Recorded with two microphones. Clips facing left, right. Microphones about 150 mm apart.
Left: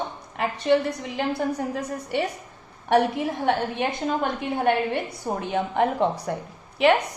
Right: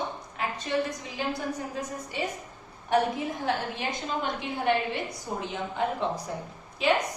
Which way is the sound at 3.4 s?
55° left (ahead or behind).